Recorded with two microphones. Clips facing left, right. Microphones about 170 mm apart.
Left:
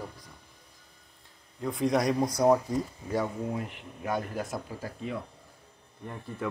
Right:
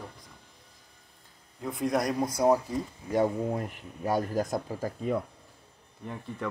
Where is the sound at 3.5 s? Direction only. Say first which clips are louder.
Right 2 dB; 45° right (ahead or behind).